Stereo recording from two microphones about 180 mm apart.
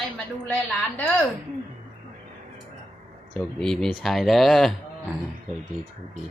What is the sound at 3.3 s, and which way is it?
Speech, 5° left (ahead or behind).